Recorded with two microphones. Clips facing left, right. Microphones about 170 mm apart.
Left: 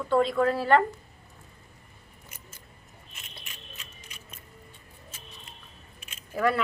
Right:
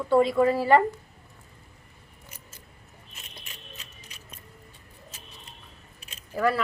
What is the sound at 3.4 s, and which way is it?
Music, 35° right (ahead or behind).